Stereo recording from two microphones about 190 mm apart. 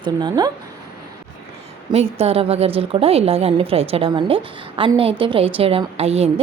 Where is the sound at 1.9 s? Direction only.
30° right (ahead or behind).